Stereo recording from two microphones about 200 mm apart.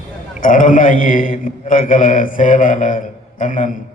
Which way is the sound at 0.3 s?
40° left (ahead or behind).